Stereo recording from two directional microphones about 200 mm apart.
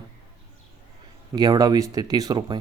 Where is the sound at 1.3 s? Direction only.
20° right (ahead or behind).